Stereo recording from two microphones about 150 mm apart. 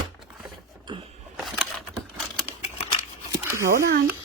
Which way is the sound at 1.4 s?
Centre (ahead or behind).